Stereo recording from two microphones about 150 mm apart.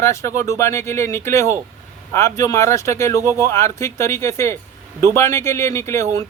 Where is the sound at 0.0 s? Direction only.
20° left (ahead or behind).